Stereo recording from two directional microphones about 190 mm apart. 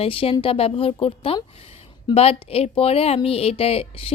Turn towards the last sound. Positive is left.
turn(degrees=30)  # may be behind; listen again after turning